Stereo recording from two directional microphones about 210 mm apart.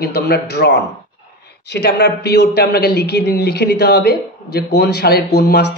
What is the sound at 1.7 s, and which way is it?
A man's voice, 55° left (ahead or behind).